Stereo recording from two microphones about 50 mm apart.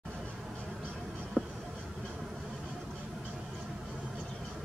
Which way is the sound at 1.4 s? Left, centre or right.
Centre.